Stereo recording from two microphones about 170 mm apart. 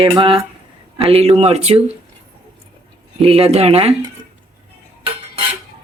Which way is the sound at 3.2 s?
35° right (ahead or behind).